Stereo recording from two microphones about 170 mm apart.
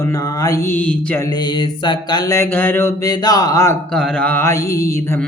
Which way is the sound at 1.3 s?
25° left (ahead or behind).